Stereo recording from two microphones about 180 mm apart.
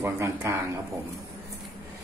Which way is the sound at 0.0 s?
15° right (ahead or behind).